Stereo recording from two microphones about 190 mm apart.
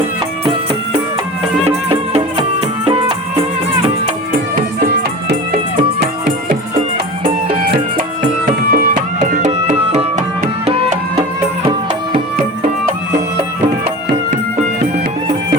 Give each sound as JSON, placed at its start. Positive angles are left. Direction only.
{"t": 1.6, "sound": "music", "side_deg": -35}
{"t": 4.5, "sound": "music", "side_deg": -55}
{"t": 7.7, "sound": "music", "side_deg": -50}